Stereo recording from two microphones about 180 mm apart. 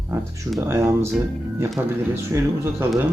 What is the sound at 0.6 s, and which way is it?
A man's voice, 15° right (ahead or behind).